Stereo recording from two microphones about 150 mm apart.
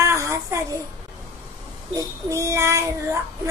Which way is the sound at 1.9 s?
20° right (ahead or behind).